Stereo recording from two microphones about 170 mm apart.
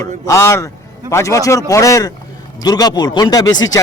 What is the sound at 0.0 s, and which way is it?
Speech, 15° left (ahead or behind).